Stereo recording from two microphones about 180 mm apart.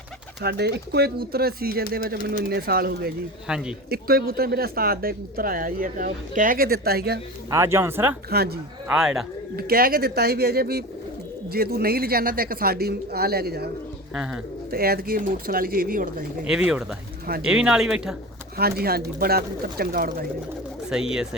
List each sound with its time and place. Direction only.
0.4 s speech: 65° right (ahead or behind)
7.5 s speech: 15° right (ahead or behind)
8.3 s speech: 60° right (ahead or behind)
8.9 s speech: 5° right (ahead or behind)
9.6 s speech: 55° right (ahead or behind)
14.7 s speech: 55° right (ahead or behind)
16.5 s speech: 5° right (ahead or behind)
18.5 s speech: 60° right (ahead or behind)
20.9 s speech: 5° right (ahead or behind)